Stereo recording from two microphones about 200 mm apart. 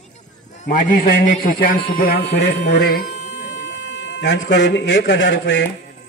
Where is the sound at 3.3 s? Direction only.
65° left (ahead or behind).